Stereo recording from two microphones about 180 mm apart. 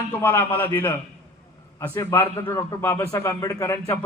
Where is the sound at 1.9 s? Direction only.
15° left (ahead or behind).